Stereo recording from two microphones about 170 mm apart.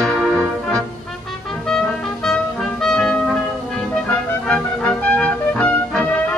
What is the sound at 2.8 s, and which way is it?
Music, centre (ahead or behind).